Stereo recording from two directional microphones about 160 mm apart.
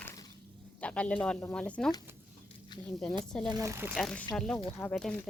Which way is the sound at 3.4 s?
20° right (ahead or behind).